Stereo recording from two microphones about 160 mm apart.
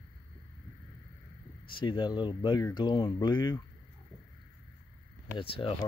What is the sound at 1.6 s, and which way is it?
Speech, 30° left (ahead or behind).